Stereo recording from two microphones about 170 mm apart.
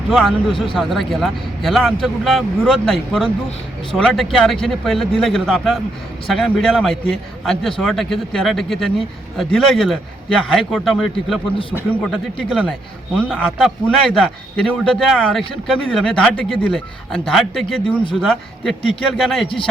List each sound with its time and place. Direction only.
0.1 s a man's voice: centre (ahead or behind)